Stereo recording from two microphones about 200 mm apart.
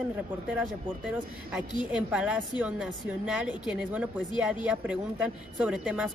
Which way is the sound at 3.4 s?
5° right (ahead or behind).